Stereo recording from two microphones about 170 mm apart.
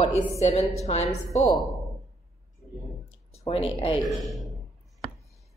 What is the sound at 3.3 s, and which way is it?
Speech, 35° left (ahead or behind).